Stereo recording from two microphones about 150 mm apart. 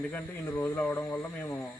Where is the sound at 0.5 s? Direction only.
15° left (ahead or behind).